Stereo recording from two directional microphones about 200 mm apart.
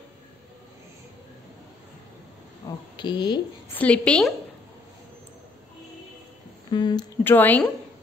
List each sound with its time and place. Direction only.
2.6 s speech: 20° left (ahead or behind)
3.7 s a woman's voice: 5° left (ahead or behind)
6.7 s speech: 20° left (ahead or behind)
7.2 s a woman's voice: 10° left (ahead or behind)